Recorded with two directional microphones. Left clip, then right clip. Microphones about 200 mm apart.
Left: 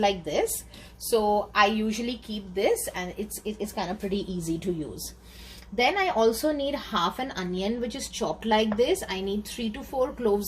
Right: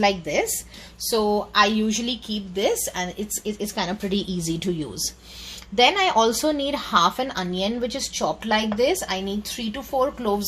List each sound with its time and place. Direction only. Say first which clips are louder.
0.0 s speech: right 4 dB; 30° right (ahead or behind)